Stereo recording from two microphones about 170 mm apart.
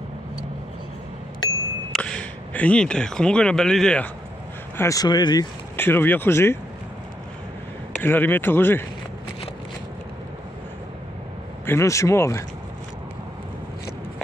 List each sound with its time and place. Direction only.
1.9 s speech: 5° left (ahead or behind)
4.7 s speech: 20° left (ahead or behind)
5.8 s speech: 15° left (ahead or behind)
8.0 s speech: 10° left (ahead or behind)
11.6 s speech: 15° left (ahead or behind)